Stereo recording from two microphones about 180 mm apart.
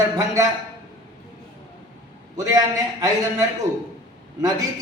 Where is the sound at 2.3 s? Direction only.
20° right (ahead or behind).